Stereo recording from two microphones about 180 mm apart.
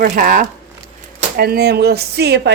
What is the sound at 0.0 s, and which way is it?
Speech, 50° right (ahead or behind).